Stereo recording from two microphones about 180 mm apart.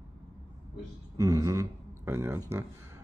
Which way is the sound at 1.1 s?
20° right (ahead or behind).